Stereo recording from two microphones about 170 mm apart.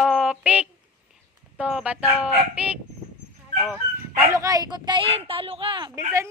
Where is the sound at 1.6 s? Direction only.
5° right (ahead or behind).